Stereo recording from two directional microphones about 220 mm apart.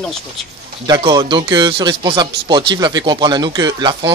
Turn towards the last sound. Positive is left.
turn(degrees=-20)  # may be behind; listen again after turning